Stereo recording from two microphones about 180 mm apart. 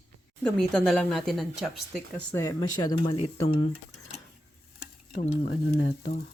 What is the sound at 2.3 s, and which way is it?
Speech, 20° left (ahead or behind).